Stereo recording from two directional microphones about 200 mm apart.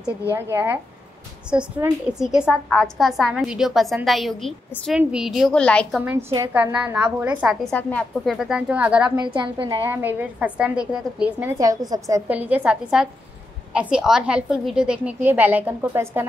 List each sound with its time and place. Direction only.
0.3 s a woman's voice: 10° right (ahead or behind)
7.7 s a woman's voice: 5° left (ahead or behind)
9.1 s a woman's voice: 25° right (ahead or behind)
9.8 s a woman's voice: 10° right (ahead or behind)